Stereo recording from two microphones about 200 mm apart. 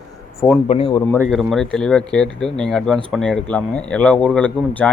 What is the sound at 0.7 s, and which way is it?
Speech, 30° left (ahead or behind).